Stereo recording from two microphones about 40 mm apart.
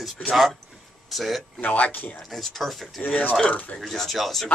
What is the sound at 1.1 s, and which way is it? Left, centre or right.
Speech, centre.